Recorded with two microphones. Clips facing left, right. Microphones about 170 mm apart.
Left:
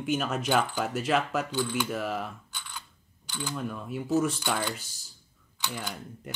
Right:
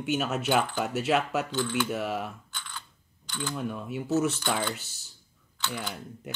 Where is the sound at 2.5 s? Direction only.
10° left (ahead or behind).